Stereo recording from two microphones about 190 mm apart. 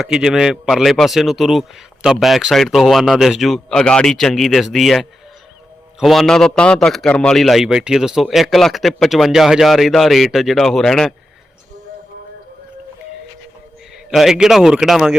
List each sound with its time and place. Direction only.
0.0 s a man's voice: 5° right (ahead or behind)
13.9 s a man's voice: centre (ahead or behind)